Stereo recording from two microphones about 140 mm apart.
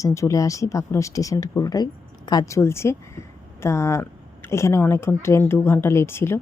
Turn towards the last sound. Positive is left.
turn(degrees=15)  # may be behind; listen again after turning